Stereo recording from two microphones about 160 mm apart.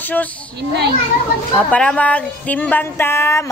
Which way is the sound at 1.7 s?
5° left (ahead or behind).